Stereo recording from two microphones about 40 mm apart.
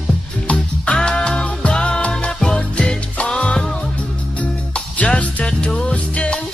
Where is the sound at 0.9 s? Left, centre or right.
Left.